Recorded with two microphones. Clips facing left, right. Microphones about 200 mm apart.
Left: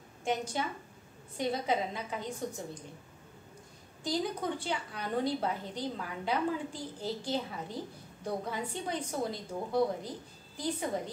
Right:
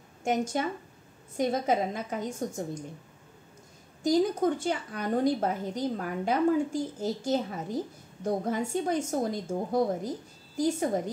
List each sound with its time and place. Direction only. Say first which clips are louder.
0.2 s a woman's voice: right 5 dB; 45° right (ahead or behind)
4.0 s a woman's voice: right 9 dB; 45° right (ahead or behind)